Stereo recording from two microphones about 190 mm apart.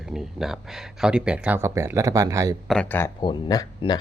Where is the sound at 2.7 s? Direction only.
10° left (ahead or behind).